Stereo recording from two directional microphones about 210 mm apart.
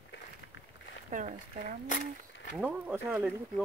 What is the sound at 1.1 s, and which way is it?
Speech, 35° right (ahead or behind).